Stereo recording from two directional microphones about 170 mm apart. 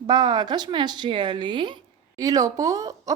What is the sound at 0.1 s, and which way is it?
A woman's voice, 25° right (ahead or behind).